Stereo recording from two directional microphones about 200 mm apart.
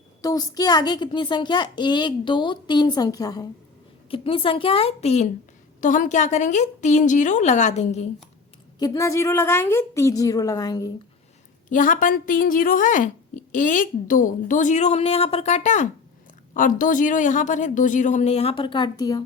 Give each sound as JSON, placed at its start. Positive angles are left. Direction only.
{"t": 0.2, "sound": "a woman's voice", "side_deg": 20}
{"t": 8.8, "sound": "a woman's voice", "side_deg": 15}
{"t": 11.7, "sound": "a woman's voice", "side_deg": 40}